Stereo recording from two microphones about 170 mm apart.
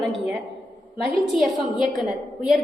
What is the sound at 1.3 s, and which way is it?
Speech, centre (ahead or behind).